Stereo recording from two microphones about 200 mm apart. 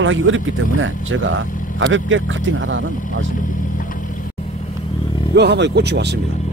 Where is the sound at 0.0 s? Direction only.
75° right (ahead or behind).